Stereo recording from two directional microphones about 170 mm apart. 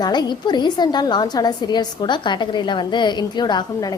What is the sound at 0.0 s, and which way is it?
A woman's voice, 25° left (ahead or behind).